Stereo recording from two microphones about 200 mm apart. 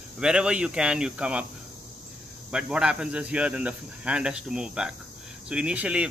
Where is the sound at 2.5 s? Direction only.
5° right (ahead or behind).